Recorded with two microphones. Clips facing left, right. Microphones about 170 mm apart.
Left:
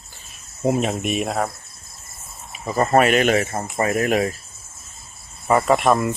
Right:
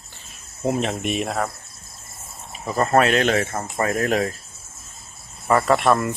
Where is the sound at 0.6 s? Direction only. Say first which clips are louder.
Left 2 dB; 10° left (ahead or behind).